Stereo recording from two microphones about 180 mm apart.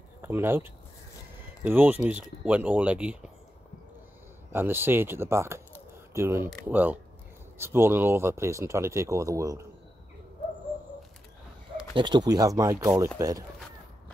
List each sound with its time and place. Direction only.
0.2 s speech: 15° right (ahead or behind)
4.5 s speech: 10° right (ahead or behind)
11.9 s speech: 25° right (ahead or behind)